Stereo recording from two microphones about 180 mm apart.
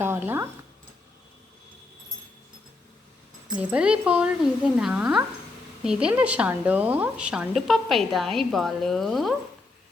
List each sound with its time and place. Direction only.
0.0 s speech: 10° right (ahead or behind)
3.5 s a woman's voice: 5° right (ahead or behind)